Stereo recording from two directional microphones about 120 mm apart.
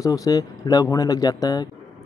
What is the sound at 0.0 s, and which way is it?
Speech, 30° left (ahead or behind).